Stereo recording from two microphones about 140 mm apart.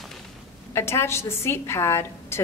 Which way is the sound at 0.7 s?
20° left (ahead or behind).